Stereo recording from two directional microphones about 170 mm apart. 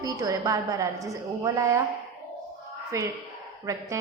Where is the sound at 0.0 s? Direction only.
20° right (ahead or behind).